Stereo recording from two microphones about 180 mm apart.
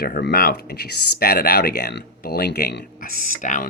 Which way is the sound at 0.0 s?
60° left (ahead or behind).